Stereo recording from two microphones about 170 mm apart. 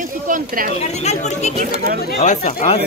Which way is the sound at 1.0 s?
40° left (ahead or behind).